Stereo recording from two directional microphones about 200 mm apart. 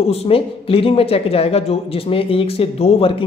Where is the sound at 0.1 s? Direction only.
30° left (ahead or behind).